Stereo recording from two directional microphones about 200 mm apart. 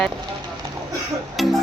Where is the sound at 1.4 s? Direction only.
Centre (ahead or behind).